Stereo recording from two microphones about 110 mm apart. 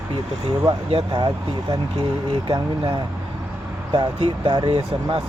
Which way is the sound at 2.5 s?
40° right (ahead or behind).